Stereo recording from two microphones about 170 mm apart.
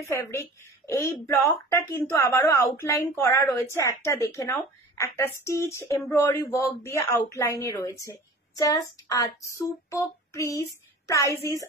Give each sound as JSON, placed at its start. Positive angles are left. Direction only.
{"t": 0.0, "sound": "a woman's voice", "side_deg": 15}
{"t": 8.5, "sound": "child singing", "side_deg": 20}